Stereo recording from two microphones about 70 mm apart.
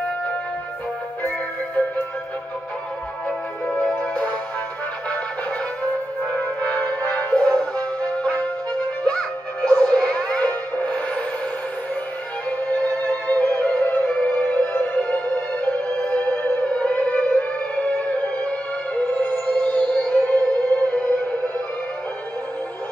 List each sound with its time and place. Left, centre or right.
3.3 s music: centre
6.3 s music: centre
12.4 s music: centre